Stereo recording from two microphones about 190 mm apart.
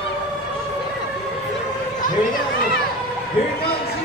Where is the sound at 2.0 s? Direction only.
50° left (ahead or behind).